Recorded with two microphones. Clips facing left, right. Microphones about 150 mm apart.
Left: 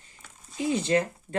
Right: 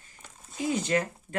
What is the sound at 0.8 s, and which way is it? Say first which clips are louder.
Speech: left 4 dB; 30° left (ahead or behind).